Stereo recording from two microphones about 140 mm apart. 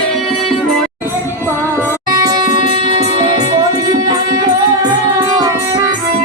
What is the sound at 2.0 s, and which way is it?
Music, 25° right (ahead or behind).